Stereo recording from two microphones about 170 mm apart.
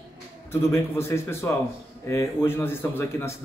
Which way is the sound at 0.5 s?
15° left (ahead or behind).